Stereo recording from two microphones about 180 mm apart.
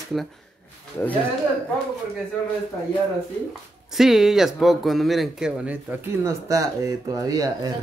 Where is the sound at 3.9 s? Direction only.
Centre (ahead or behind).